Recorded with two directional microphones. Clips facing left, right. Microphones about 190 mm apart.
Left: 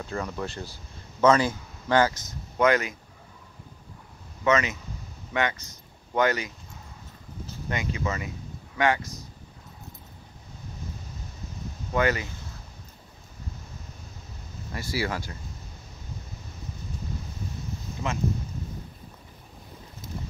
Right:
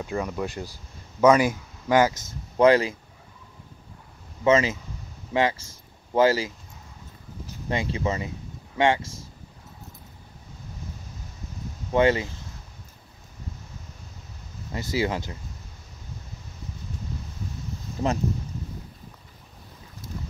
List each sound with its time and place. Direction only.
0.0 s speech: 10° right (ahead or behind); by 3.0 s 30° right (ahead or behind)
4.5 s speech: 30° right (ahead or behind)
7.7 s speech: 30° right (ahead or behind)
11.9 s speech: 25° right (ahead or behind)
14.7 s speech: 20° right (ahead or behind)